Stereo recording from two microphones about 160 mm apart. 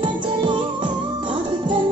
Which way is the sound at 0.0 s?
30° right (ahead or behind).